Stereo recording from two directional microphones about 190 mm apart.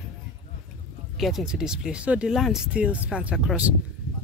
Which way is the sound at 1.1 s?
Centre (ahead or behind).